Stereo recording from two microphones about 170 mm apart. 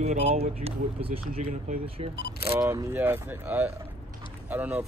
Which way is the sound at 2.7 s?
15° right (ahead or behind).